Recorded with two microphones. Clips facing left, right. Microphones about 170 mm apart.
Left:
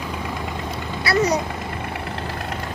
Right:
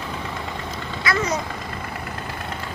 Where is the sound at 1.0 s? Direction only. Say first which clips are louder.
Left 4 dB; 35° left (ahead or behind).